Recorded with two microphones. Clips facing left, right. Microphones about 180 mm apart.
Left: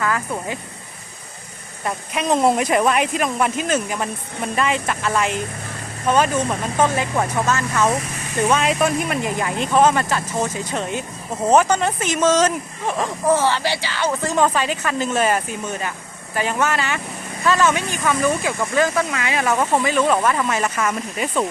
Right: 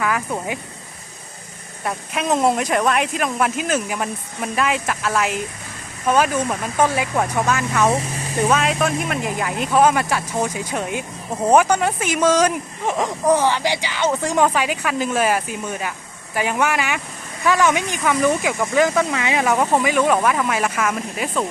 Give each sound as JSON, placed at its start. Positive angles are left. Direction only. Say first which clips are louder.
{"t": 0.0, "sound": "speech", "louder": "right 1 dB", "side_deg": -15}
{"t": 1.8, "sound": "speech", "louder": "even", "side_deg": 0}
{"t": 7.8, "sound": "speech", "louder": "right 2 dB", "side_deg": -25}
{"t": 8.5, "sound": "speech", "louder": "left 1 dB", "side_deg": 0}